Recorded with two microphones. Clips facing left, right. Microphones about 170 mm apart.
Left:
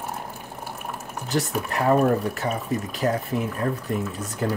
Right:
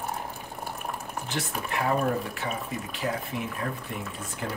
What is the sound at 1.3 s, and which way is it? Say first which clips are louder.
Speech: left 7 dB; 40° left (ahead or behind).